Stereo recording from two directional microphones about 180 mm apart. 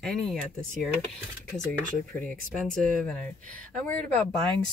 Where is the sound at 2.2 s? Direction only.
5° left (ahead or behind).